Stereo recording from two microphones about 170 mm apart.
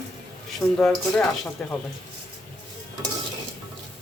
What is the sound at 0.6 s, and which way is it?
Speech, 20° left (ahead or behind).